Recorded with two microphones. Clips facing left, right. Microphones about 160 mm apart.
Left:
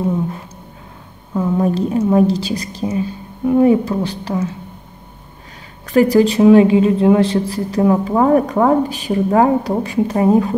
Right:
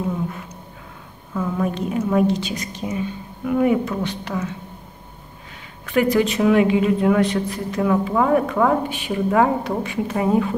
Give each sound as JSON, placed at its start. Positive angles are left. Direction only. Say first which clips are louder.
{"t": 1.3, "sound": "a woman's voice", "louder": "left 6 dB", "side_deg": 30}
{"t": 5.9, "sound": "a woman's voice", "louder": "left 6 dB", "side_deg": 35}